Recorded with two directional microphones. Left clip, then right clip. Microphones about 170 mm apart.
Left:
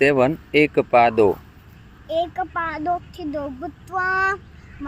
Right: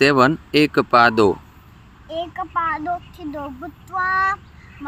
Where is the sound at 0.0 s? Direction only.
70° right (ahead or behind).